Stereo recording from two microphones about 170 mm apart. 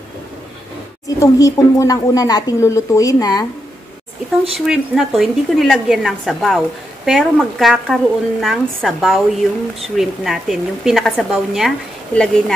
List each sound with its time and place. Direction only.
1.0 s speech: 20° left (ahead or behind)
4.6 s speech: centre (ahead or behind)